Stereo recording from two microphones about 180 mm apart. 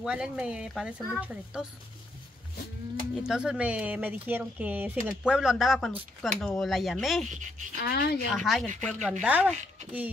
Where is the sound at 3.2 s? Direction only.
5° right (ahead or behind).